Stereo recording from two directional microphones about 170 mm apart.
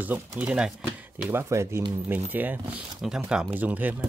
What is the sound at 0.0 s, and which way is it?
Speech, 10° right (ahead or behind).